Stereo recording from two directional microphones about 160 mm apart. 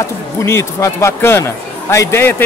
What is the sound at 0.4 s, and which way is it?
A man's voice, 15° left (ahead or behind).